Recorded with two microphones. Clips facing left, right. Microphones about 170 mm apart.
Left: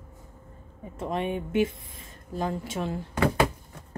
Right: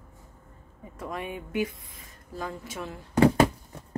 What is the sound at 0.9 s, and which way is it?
Speech, 25° left (ahead or behind).